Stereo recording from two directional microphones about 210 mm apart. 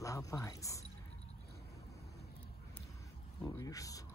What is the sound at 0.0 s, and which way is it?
Speech, 15° left (ahead or behind).